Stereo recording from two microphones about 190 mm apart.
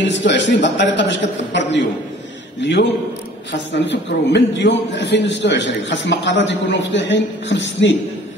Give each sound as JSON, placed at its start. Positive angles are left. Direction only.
{"t": 0.0, "sound": "a man's voice", "side_deg": 70}